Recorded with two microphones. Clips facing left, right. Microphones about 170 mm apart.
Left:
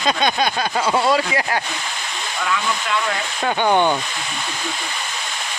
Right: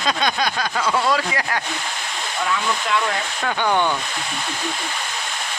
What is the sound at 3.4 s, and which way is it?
Speech, 25° left (ahead or behind).